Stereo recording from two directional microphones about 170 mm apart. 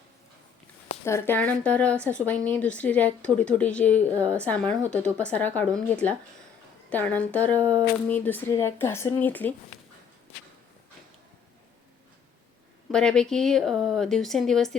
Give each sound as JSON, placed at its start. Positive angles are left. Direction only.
{"t": 1.0, "sound": "speech", "side_deg": 15}
{"t": 7.6, "sound": "a sound", "side_deg": -20}
{"t": 8.0, "sound": "speech", "side_deg": 10}
{"t": 12.9, "sound": "speech", "side_deg": 5}